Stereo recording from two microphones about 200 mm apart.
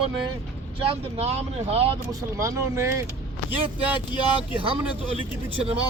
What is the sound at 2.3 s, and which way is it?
Speech, 15° right (ahead or behind).